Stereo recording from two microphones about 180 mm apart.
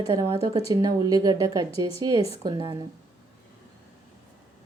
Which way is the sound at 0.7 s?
20° right (ahead or behind).